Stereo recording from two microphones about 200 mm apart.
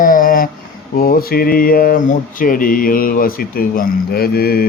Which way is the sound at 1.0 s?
45° left (ahead or behind).